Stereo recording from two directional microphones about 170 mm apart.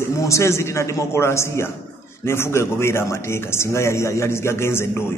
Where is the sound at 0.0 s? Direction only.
15° left (ahead or behind).